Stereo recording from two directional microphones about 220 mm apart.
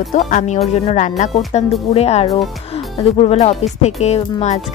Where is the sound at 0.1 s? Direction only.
35° left (ahead or behind).